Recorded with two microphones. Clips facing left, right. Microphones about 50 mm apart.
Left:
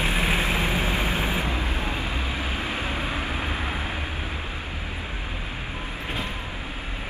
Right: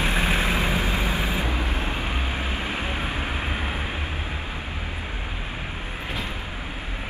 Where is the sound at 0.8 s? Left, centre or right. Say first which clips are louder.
Even; left.